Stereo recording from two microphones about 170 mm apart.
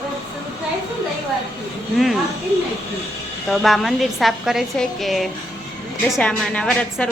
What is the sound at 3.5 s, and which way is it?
A woman's voice, centre (ahead or behind).